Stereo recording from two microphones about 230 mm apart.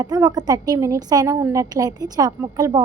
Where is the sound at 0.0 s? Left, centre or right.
Centre.